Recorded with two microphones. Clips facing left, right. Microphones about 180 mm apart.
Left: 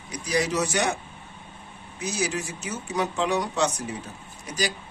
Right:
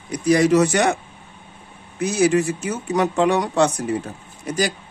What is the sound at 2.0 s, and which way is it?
A man's voice, 55° right (ahead or behind).